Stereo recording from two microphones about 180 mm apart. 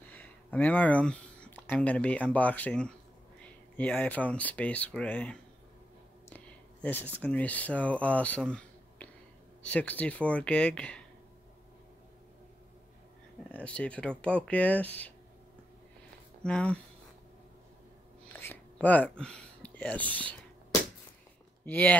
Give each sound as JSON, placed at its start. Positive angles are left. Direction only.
{"t": 0.0, "sound": "speech", "side_deg": 10}
{"t": 13.5, "sound": "speech", "side_deg": 10}
{"t": 16.4, "sound": "speech", "side_deg": 5}
{"t": 18.3, "sound": "a sound", "side_deg": 10}
{"t": 21.6, "sound": "speech", "side_deg": 10}